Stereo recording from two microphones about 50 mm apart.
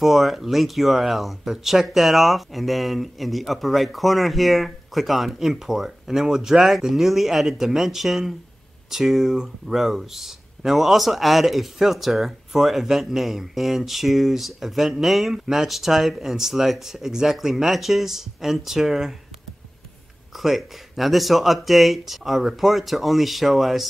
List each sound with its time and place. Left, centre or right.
0.0 s speech: centre
20.3 s speech: centre